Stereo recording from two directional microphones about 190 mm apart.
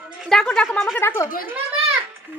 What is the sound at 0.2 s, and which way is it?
Speech, centre (ahead or behind).